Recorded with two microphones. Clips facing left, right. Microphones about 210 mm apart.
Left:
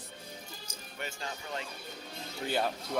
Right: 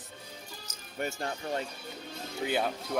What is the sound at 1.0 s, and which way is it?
Speech, 50° right (ahead or behind).